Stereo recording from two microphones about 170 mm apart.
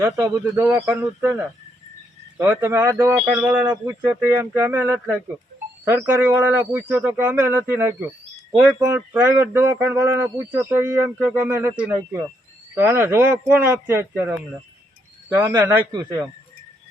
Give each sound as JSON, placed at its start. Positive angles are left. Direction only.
{"t": 0.0, "sound": "speech", "side_deg": -15}
{"t": 2.4, "sound": "speech", "side_deg": -15}
{"t": 15.9, "sound": "speech", "side_deg": -25}